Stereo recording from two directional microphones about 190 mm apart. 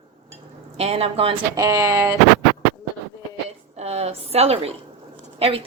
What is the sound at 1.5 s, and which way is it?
Speech, 15° right (ahead or behind).